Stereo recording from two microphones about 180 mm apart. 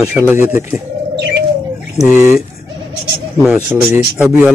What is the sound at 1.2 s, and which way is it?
Bird, 65° right (ahead or behind).